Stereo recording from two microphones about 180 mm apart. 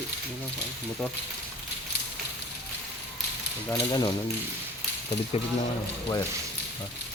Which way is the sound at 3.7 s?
20° left (ahead or behind).